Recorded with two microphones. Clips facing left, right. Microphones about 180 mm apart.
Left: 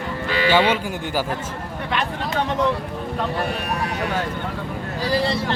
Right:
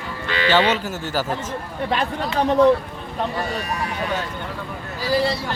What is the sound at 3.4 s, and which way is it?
Speech, 60° left (ahead or behind).